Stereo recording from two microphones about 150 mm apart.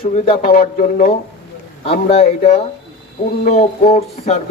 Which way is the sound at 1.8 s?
40° left (ahead or behind).